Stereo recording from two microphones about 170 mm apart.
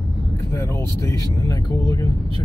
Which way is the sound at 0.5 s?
15° left (ahead or behind).